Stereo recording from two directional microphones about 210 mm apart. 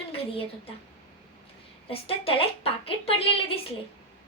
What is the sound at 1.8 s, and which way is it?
A woman's voice, 25° left (ahead or behind).